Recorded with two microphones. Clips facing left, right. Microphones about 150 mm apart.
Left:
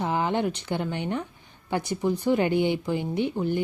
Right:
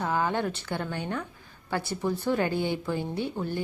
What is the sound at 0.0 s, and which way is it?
Speech, 20° left (ahead or behind).